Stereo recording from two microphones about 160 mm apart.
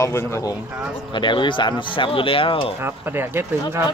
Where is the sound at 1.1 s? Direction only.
30° left (ahead or behind).